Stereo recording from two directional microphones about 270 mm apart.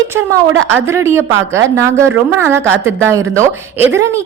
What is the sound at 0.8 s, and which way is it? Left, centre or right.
A woman's voice, centre.